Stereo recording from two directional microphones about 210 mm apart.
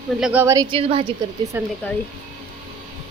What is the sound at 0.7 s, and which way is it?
Speech, 25° right (ahead or behind).